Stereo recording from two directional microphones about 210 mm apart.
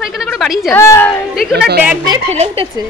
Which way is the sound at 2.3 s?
30° right (ahead or behind).